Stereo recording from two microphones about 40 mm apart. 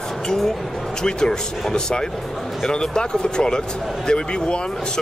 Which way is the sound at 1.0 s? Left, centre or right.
Centre.